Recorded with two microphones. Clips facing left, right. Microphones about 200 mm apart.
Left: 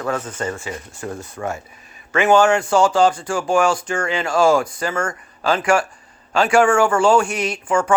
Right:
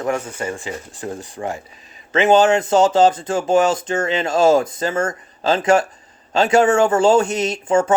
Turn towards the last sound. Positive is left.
turn(degrees=-25)  # may be behind; listen again after turning